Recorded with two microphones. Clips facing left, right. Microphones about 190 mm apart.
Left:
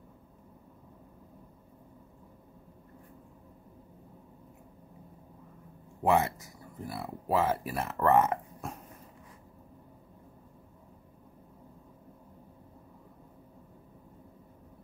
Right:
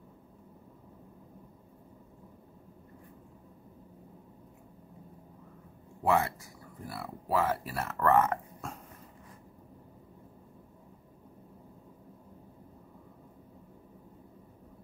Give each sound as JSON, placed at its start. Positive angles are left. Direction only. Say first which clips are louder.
{"t": 6.0, "sound": "speech", "louder": "left 2 dB", "side_deg": 20}